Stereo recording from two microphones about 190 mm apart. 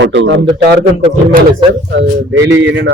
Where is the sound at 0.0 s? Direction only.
70° right (ahead or behind).